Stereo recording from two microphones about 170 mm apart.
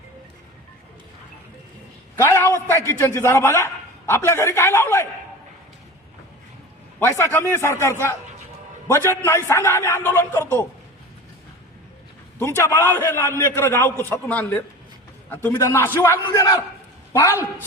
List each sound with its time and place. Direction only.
2.1 s a man's voice: 15° left (ahead or behind)
7.0 s a man's voice: 15° left (ahead or behind)
12.4 s a man's voice: 15° left (ahead or behind)